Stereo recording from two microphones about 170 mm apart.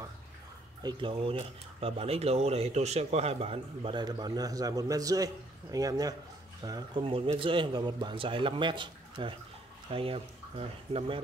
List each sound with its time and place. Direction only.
0.8 s a man's voice: 30° right (ahead or behind)